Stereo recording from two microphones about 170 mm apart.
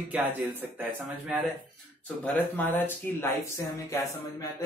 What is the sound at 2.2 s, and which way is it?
Speech, 10° left (ahead or behind).